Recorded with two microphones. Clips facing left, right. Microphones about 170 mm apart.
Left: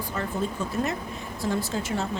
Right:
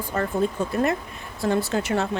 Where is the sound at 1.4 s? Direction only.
65° right (ahead or behind).